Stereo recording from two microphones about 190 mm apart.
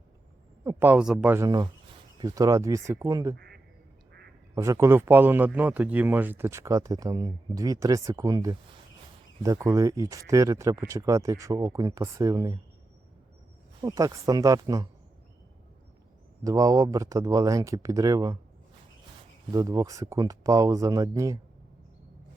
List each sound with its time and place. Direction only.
0.6 s a man's voice: 10° right (ahead or behind)
3.3 s quack: 55° right (ahead or behind)
4.5 s a man's voice: 15° right (ahead or behind)
13.8 s a man's voice: 20° right (ahead or behind)
16.4 s a man's voice: 15° right (ahead or behind)
19.5 s a man's voice: 20° right (ahead or behind)